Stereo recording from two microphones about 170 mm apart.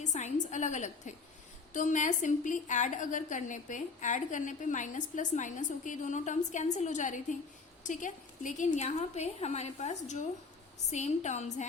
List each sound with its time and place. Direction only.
0.0 s a woman's voice: 45° left (ahead or behind)